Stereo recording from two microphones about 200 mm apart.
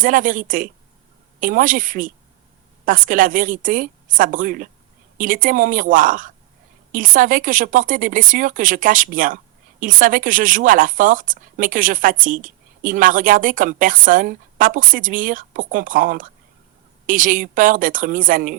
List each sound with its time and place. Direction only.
0.0 s speech: 40° right (ahead or behind)